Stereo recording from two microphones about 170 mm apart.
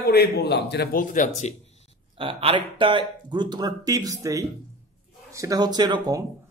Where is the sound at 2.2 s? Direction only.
30° right (ahead or behind).